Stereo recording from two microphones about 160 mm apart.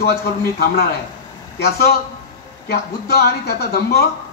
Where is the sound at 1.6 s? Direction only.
80° left.